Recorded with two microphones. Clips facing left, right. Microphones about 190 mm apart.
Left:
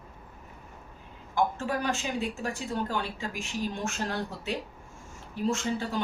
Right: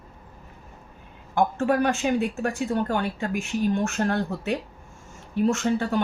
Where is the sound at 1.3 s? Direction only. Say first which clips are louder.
Right 6 dB; 60° right (ahead or behind).